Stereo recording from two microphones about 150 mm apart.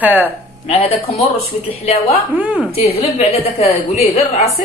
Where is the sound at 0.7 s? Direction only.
45° left (ahead or behind).